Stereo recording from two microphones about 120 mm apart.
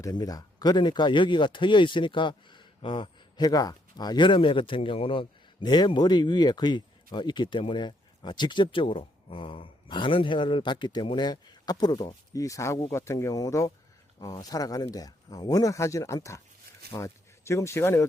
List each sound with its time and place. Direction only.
0.0 s speech: 30° left (ahead or behind)